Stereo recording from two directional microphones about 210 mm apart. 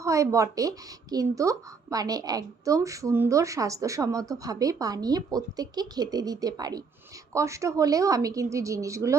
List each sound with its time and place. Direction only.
0.0 s a woman's voice: 15° right (ahead or behind)